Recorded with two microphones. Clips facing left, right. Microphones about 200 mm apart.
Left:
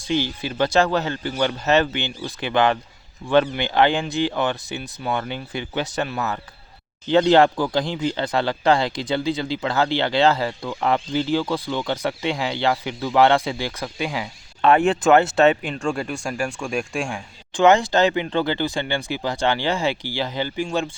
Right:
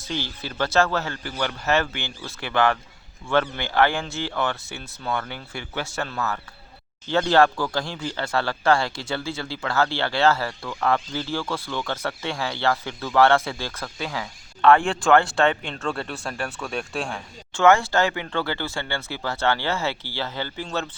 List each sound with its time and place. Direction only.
0.0 s speech: 15° left (ahead or behind)